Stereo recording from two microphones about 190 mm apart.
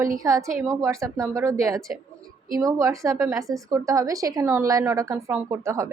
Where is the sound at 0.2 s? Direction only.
15° right (ahead or behind).